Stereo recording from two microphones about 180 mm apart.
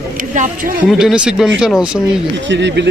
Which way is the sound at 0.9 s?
Centre (ahead or behind).